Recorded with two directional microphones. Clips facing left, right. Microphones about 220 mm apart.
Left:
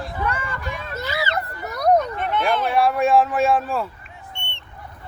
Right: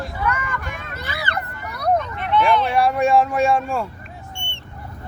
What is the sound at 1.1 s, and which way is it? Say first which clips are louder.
Children playing: left 4 dB; 50° right (ahead or behind).